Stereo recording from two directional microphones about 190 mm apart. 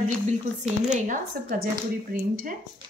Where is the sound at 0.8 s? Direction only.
40° right (ahead or behind).